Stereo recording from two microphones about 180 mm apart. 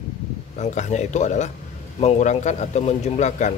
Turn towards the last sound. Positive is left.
turn(degrees=40)  # may be behind; listen again after turning